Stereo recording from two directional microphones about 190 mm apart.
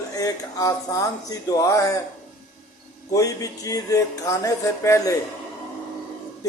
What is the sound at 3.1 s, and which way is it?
Speech, 20° left (ahead or behind).